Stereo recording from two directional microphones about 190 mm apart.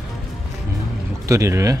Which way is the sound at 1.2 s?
15° right (ahead or behind).